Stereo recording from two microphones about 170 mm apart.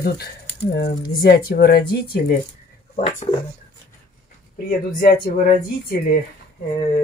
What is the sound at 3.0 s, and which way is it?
Speech, 45° left (ahead or behind).